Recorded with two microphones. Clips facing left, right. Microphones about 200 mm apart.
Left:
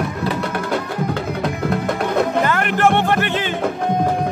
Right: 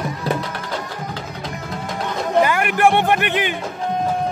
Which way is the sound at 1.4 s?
60° left (ahead or behind).